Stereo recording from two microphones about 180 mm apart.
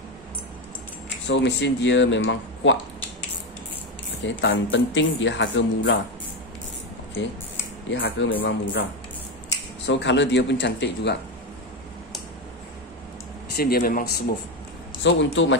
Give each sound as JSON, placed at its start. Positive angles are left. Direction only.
{"t": 1.2, "sound": "speech", "side_deg": 75}
{"t": 4.2, "sound": "speech", "side_deg": 90}
{"t": 7.9, "sound": "speech", "side_deg": 80}
{"t": 8.4, "sound": "a man's voice", "side_deg": 60}
{"t": 9.8, "sound": "speech", "side_deg": 80}
{"t": 13.6, "sound": "a man's voice", "side_deg": 55}
{"t": 15.0, "sound": "speech", "side_deg": 85}